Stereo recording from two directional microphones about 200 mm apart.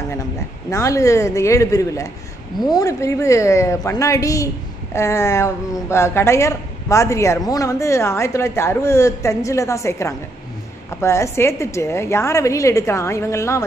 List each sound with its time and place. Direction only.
0.7 s speech: 15° left (ahead or behind)